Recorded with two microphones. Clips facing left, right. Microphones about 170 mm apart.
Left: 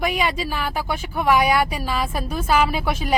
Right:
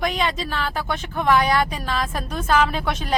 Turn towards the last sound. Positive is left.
turn(degrees=10)  # may be behind; listen again after turning